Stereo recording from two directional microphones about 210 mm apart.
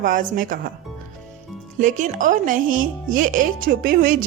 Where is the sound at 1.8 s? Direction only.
40° right (ahead or behind).